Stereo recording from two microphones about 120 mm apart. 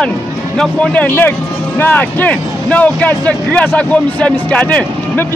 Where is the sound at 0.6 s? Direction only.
10° left (ahead or behind).